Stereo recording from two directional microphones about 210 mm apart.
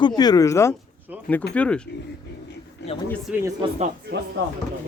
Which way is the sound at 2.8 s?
55° left (ahead or behind).